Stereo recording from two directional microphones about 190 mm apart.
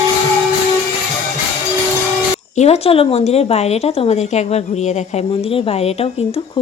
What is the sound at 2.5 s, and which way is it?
A woman's voice, 35° left (ahead or behind).